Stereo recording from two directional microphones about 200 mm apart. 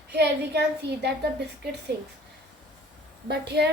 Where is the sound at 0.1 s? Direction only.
55° right (ahead or behind).